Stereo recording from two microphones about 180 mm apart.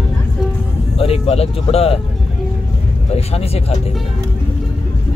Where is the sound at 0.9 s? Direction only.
35° left (ahead or behind).